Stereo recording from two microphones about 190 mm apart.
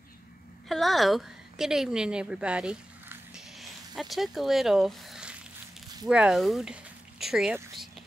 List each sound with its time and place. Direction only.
0.7 s a woman's voice: centre (ahead or behind)